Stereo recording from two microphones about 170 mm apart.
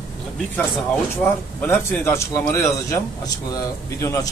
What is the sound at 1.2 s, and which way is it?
A man's voice, 15° left (ahead or behind).